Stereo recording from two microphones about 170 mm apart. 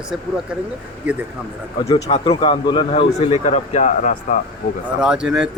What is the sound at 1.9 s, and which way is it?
Speech, 35° left (ahead or behind).